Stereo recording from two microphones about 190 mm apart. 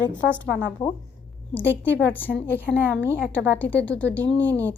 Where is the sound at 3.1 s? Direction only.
10° left (ahead or behind).